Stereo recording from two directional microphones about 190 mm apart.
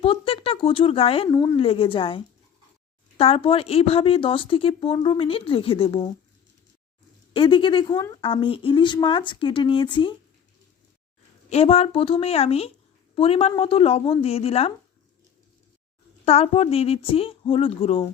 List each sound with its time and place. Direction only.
0.0 s a sound: 30° left (ahead or behind)
1.3 s speech: 20° left (ahead or behind)
7.3 s speech: 25° left (ahead or behind)
11.5 s speech: 35° left (ahead or behind)
16.2 s speech: 35° left (ahead or behind)